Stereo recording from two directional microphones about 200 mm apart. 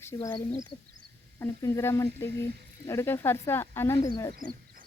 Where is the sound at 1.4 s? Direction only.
15° left (ahead or behind).